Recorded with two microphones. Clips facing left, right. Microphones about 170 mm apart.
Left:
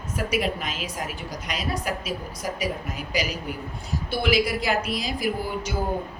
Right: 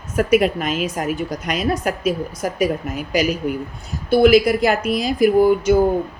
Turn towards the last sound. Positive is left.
turn(degrees=-55)  # may be behind; listen again after turning